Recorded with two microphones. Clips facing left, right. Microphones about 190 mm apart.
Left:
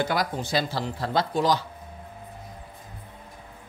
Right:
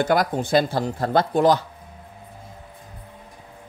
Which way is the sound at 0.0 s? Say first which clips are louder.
Right 6 dB; 50° right (ahead or behind).